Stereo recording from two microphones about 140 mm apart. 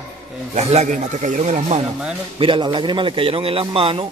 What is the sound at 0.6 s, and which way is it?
Speech, 50° right (ahead or behind).